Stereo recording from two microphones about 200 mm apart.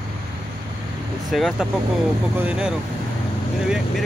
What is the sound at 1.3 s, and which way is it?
Speech, centre (ahead or behind).